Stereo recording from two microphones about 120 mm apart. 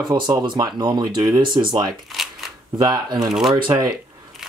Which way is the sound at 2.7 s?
35° right (ahead or behind).